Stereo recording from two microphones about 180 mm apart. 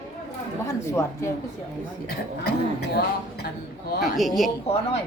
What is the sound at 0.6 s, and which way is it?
Speech, 15° left (ahead or behind).